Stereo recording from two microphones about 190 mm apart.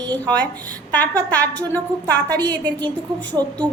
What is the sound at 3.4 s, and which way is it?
Speech, 20° right (ahead or behind).